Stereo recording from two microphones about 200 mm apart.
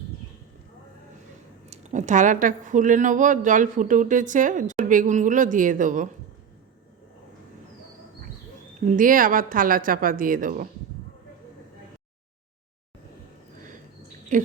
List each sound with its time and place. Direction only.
1.7 s speech: 35° right (ahead or behind)
8.8 s a woman's voice: 40° right (ahead or behind)
14.3 s speech: 40° right (ahead or behind)